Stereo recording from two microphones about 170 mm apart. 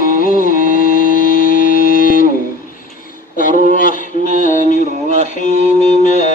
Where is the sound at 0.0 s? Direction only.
55° left (ahead or behind).